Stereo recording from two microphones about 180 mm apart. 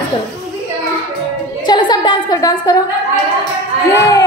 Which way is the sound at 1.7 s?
25° left (ahead or behind).